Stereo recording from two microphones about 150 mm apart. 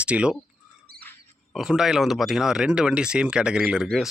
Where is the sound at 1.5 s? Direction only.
5° right (ahead or behind).